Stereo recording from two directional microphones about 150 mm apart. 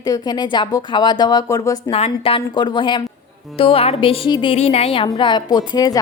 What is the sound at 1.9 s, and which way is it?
Music, 40° left (ahead or behind).